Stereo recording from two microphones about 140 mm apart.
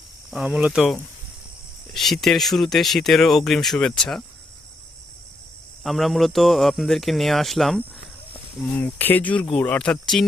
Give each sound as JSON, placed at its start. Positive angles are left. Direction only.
{"t": 0.3, "sound": "speech", "side_deg": -5}
{"t": 5.8, "sound": "speech", "side_deg": 0}
{"t": 8.8, "sound": "speech", "side_deg": 15}